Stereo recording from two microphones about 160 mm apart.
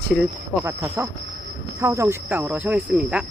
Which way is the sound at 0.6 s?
15° right (ahead or behind).